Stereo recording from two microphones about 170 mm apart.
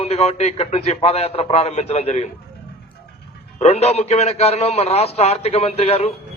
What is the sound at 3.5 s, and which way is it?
A man's voice, 40° left (ahead or behind).